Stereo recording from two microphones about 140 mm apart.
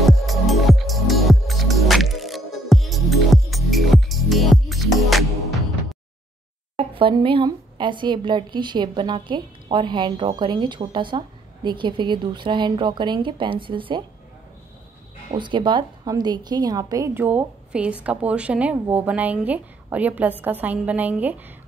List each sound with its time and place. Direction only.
0.0 s music: centre (ahead or behind)
6.8 s a woman's voice: 40° right (ahead or behind)
15.3 s a woman's voice: 35° right (ahead or behind); by 21.4 s 10° right (ahead or behind)